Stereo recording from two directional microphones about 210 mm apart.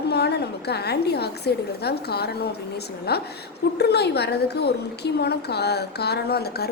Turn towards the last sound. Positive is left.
turn(degrees=50)  # may be behind; listen again after turning